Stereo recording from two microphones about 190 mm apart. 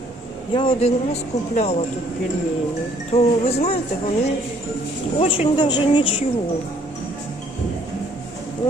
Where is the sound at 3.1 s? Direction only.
35° left (ahead or behind).